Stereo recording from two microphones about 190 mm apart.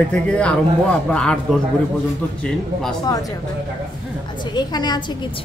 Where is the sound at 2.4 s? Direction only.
5° left (ahead or behind).